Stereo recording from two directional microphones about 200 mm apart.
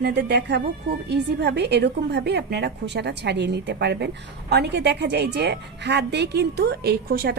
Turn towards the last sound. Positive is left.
turn(degrees=-50)  # may be behind; listen again after turning